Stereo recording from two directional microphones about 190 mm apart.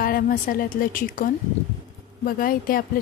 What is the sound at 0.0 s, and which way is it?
Speech, 50° left (ahead or behind).